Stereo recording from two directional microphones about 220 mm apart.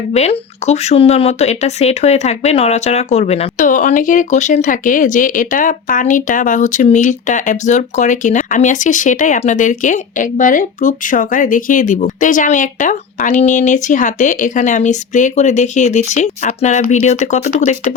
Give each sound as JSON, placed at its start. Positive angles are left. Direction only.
{"t": 0.1, "sound": "speech", "side_deg": 30}